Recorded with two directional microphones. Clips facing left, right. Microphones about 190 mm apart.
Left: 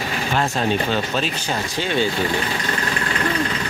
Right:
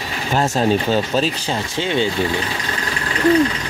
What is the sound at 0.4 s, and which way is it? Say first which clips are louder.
Speech: right 5 dB; 40° right (ahead or behind).